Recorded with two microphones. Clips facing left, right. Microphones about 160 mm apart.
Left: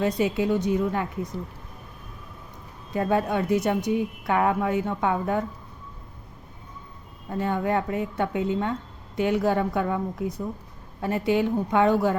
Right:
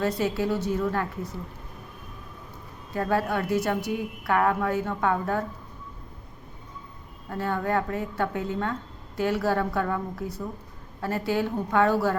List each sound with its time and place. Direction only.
0.2 s a woman's voice: 20° left (ahead or behind)
2.9 s a woman's voice: 20° left (ahead or behind)
7.3 s a woman's voice: 20° left (ahead or behind)